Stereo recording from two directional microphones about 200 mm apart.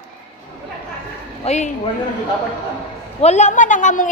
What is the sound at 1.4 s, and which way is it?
Speech, 35° left (ahead or behind).